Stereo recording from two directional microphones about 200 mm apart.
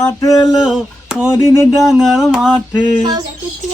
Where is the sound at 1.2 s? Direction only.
10° left (ahead or behind).